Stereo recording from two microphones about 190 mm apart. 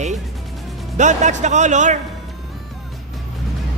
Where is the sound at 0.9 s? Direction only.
40° right (ahead or behind).